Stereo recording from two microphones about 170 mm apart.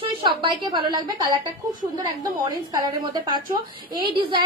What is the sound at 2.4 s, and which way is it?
A woman's voice, 25° right (ahead or behind).